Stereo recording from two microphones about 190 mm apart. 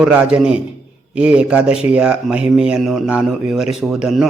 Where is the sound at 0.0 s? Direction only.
5° right (ahead or behind).